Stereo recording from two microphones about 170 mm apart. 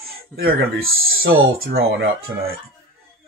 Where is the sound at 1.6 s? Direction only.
65° right (ahead or behind).